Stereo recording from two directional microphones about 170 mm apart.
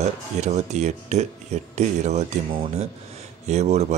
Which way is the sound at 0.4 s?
40° right (ahead or behind).